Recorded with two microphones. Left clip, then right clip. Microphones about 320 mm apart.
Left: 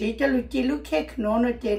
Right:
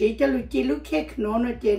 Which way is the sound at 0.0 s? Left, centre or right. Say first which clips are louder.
Right 2 dB; centre.